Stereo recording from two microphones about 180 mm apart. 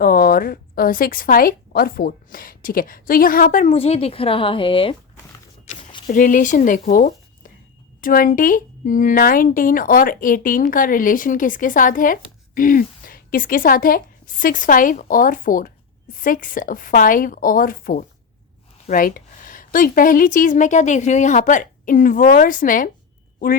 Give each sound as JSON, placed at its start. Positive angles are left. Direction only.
{"t": 0.0, "sound": "speech", "side_deg": 55}
{"t": 3.7, "sound": "a woman's voice", "side_deg": 35}
{"t": 6.1, "sound": "speech", "side_deg": 45}